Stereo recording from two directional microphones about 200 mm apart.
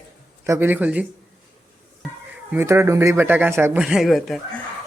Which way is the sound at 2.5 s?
15° right (ahead or behind).